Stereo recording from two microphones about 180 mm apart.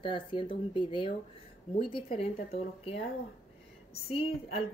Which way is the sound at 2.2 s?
35° left (ahead or behind).